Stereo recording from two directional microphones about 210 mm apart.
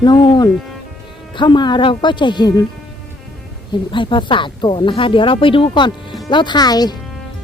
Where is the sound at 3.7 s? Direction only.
20° left (ahead or behind).